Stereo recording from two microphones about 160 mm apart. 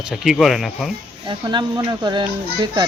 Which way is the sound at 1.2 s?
30° right (ahead or behind).